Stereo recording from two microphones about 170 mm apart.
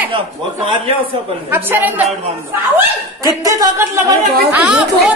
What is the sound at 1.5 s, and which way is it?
Speech, 10° right (ahead or behind).